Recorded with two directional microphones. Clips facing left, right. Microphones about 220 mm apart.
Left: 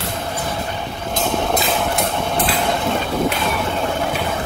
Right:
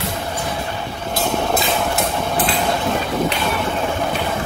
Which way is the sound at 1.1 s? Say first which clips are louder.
Even; centre (ahead or behind).